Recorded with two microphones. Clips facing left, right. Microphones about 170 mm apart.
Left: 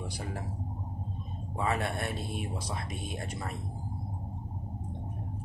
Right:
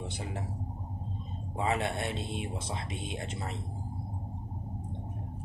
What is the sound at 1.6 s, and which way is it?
Speech, 25° right (ahead or behind).